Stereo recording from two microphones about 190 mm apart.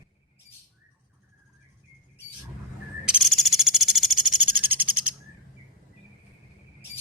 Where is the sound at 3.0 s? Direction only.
Centre (ahead or behind).